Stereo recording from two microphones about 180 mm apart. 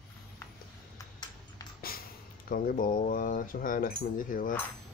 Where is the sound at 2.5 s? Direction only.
50° left (ahead or behind).